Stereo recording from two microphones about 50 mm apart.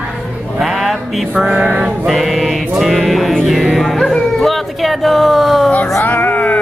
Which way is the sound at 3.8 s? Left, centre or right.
Centre.